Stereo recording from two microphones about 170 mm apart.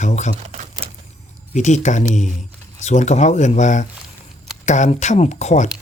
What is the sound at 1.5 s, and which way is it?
Speech, 45° left (ahead or behind).